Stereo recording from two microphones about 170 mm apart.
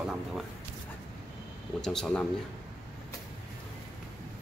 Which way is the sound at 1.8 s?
5° left (ahead or behind).